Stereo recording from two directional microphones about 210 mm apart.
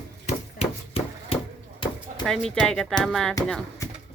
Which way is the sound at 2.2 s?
5° left (ahead or behind).